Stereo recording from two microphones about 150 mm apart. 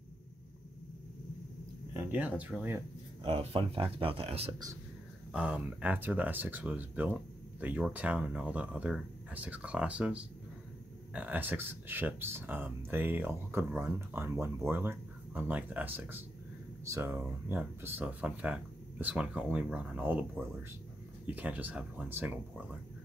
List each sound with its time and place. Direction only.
2.0 s speech: 10° right (ahead or behind)
3.3 s speech: 35° right (ahead or behind)
5.3 s speech: 10° right (ahead or behind)